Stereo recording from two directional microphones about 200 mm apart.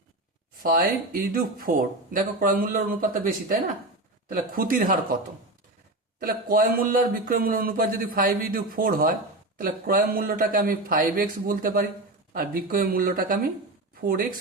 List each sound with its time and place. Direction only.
0.6 s speech: 45° right (ahead or behind)
6.1 s speech: 45° right (ahead or behind)